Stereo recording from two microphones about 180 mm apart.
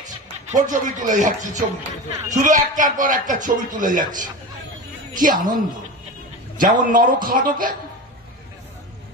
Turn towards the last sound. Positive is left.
turn(degrees=-50)  # may be behind; listen again after turning